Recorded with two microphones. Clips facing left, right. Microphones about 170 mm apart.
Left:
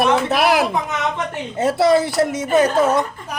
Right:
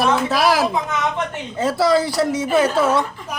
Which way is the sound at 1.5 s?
25° left (ahead or behind).